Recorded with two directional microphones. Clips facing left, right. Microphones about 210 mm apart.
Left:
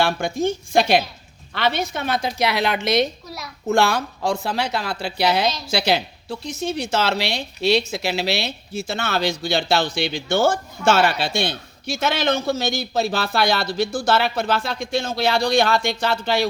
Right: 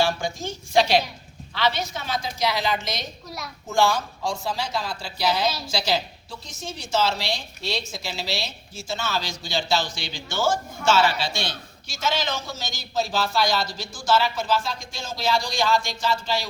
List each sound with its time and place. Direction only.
0.0 s a woman's voice: 60° left (ahead or behind)
3.2 s a sound: centre (ahead or behind)
3.7 s a woman's voice: 65° left (ahead or behind)